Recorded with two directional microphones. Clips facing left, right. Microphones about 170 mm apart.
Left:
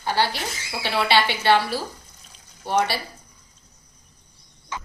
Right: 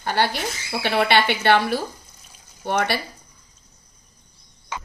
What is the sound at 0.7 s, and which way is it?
Speech, 55° right (ahead or behind).